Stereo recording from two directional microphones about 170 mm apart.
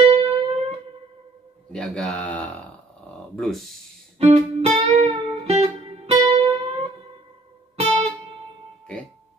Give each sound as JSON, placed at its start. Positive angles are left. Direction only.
{"t": 0.0, "sound": "music", "side_deg": -35}
{"t": 1.7, "sound": "speech", "side_deg": 5}
{"t": 4.2, "sound": "music", "side_deg": -35}